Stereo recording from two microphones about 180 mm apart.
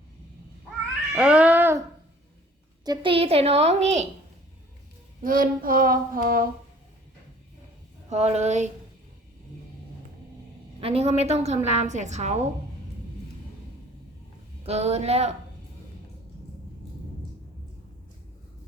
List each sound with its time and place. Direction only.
1.1 s cat: 5° right (ahead or behind)
2.8 s a woman's voice: 25° right (ahead or behind)
5.2 s a sound: 50° right (ahead or behind)
8.1 s a woman's voice: 40° right (ahead or behind)
10.8 s a woman's voice: 35° right (ahead or behind)
14.6 s a woman's voice: 35° right (ahead or behind)